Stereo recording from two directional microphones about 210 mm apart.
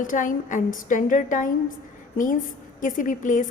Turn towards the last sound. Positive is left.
turn(degrees=40)  # may be behind; listen again after turning